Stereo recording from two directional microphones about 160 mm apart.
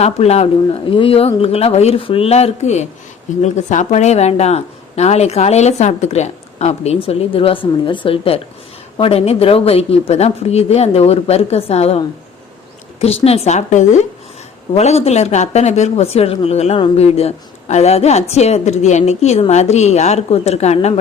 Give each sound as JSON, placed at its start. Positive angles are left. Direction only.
{"t": 0.0, "sound": "speech", "side_deg": 40}